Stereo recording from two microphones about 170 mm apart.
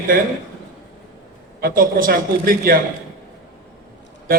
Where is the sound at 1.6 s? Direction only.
60° right (ahead or behind).